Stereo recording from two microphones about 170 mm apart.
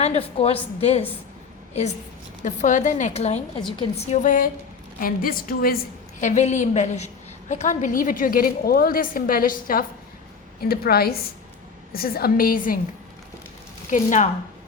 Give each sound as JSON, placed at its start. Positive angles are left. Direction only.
{"t": 0.0, "sound": "a woman's voice", "side_deg": 35}
{"t": 2.4, "sound": "a woman's voice", "side_deg": 45}
{"t": 13.9, "sound": "a woman's voice", "side_deg": 45}